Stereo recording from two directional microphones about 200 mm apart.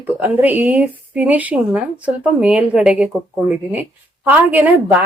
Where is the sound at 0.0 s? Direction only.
10° right (ahead or behind).